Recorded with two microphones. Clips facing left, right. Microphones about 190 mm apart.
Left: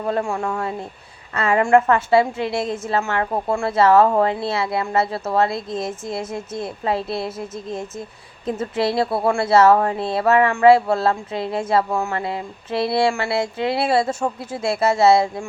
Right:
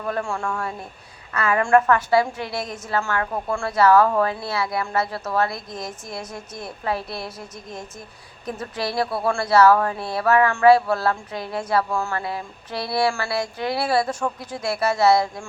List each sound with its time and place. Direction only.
0.0 s a woman's voice: 25° left (ahead or behind)